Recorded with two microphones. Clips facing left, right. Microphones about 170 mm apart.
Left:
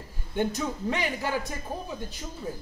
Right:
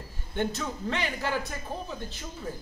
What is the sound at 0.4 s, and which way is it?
Speech, 15° left (ahead or behind).